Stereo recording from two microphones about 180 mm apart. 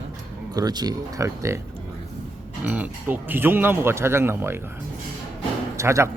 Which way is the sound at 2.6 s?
10° right (ahead or behind).